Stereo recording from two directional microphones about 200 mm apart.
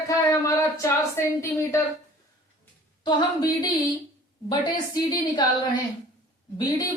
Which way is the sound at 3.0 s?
20° left (ahead or behind).